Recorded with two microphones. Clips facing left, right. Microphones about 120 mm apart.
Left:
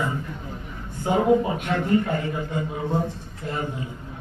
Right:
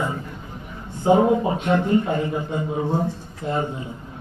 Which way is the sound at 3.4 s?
25° right (ahead or behind).